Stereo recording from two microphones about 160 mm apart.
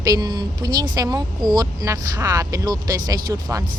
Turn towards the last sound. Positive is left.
turn(degrees=-20)  # may be behind; listen again after turning